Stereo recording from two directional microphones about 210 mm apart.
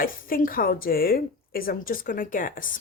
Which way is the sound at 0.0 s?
40° left (ahead or behind).